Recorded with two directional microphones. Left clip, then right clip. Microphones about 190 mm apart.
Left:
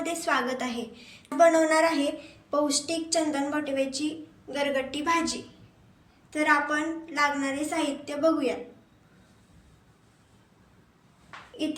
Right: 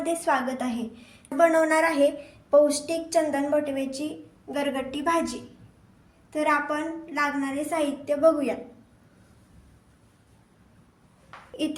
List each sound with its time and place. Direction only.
0.0 s a woman's voice: 35° right (ahead or behind)
11.5 s speech: 65° right (ahead or behind)